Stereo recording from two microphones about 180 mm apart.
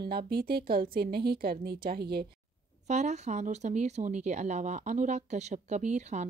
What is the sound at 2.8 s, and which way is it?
Speech, 40° right (ahead or behind).